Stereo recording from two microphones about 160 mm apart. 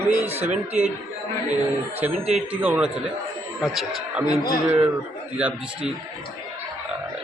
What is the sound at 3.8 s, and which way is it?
Speech, centre (ahead or behind).